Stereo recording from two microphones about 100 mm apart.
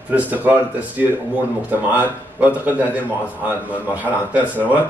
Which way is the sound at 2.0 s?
15° right (ahead or behind).